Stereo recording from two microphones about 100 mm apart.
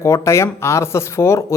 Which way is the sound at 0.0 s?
30° left (ahead or behind).